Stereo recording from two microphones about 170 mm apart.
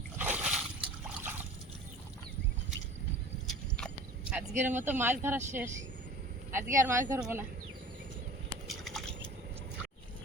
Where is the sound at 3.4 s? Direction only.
5° left (ahead or behind).